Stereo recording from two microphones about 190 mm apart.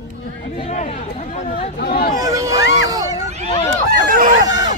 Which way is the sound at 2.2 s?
20° right (ahead or behind).